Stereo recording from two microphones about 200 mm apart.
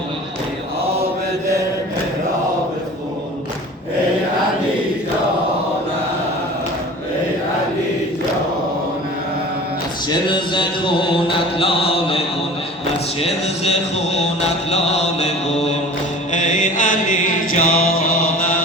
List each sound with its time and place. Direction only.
10.2 s mantra: 25° left (ahead or behind); by 18.5 s 40° left (ahead or behind)